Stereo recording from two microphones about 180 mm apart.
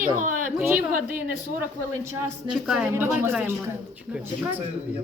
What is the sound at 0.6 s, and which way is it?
Speech, 10° right (ahead or behind).